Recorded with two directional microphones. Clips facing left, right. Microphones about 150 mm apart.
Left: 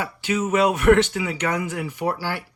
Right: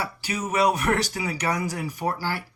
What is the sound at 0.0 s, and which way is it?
Speech, 35° right (ahead or behind).